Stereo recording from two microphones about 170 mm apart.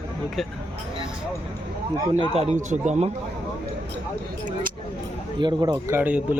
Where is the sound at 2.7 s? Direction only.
45° right (ahead or behind).